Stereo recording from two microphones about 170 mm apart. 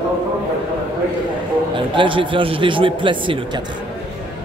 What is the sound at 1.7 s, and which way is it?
Speech, 30° right (ahead or behind).